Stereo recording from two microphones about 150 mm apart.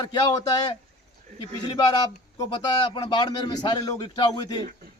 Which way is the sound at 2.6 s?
30° left (ahead or behind).